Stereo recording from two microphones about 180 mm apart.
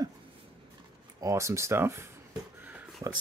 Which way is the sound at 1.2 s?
15° right (ahead or behind).